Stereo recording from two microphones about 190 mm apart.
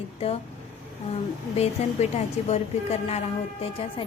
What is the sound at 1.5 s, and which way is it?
A woman's voice, 35° left (ahead or behind).